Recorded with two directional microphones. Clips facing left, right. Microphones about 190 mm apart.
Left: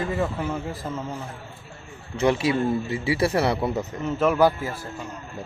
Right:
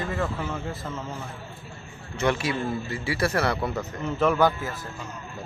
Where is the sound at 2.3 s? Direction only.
25° left (ahead or behind).